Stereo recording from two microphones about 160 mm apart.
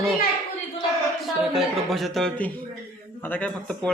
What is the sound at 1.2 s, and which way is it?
A man's voice, centre (ahead or behind).